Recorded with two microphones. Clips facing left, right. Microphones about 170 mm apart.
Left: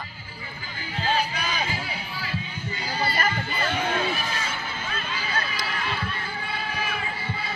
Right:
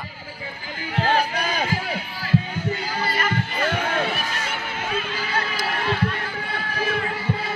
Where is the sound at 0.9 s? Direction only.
60° right (ahead or behind).